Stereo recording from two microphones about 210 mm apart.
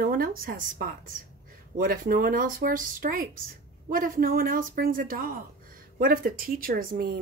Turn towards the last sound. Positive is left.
turn(degrees=-45)  # may be behind; listen again after turning